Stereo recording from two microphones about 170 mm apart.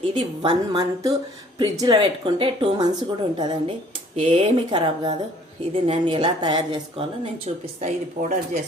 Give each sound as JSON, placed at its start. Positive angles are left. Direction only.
{"t": 0.1, "sound": "speech", "side_deg": -30}
{"t": 7.4, "sound": "a woman's voice", "side_deg": -40}